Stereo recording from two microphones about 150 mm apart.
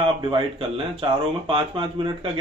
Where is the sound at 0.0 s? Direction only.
35° right (ahead or behind).